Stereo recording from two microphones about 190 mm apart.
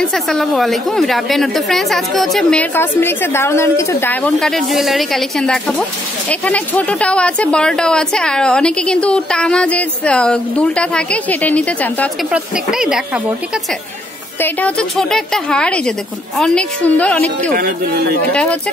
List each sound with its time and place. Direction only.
0.0 s a woman's voice: 5° left (ahead or behind)
12.3 s a woman's voice: 5° right (ahead or behind)
14.4 s a woman's voice: 5° left (ahead or behind)
17.6 s speech: 50° right (ahead or behind)
18.3 s a woman's voice: 5° left (ahead or behind)